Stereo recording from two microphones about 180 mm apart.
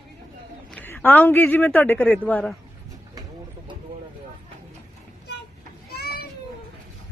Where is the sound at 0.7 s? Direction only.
5° left (ahead or behind).